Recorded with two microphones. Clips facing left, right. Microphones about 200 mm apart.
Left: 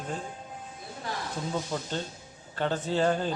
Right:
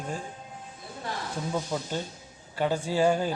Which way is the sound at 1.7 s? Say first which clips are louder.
Right 1 dB; 10° right (ahead or behind).